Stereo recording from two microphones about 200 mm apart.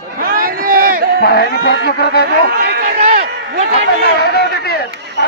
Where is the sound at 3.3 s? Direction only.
55° right (ahead or behind).